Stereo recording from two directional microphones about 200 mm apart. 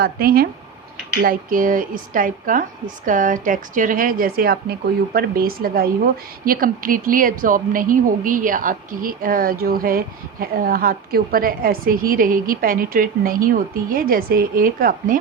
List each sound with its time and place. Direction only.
0.0 s a woman's voice: 50° right (ahead or behind)